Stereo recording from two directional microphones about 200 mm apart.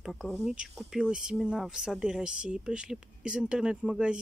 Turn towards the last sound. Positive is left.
turn(degrees=-5)  # may be behind; listen again after turning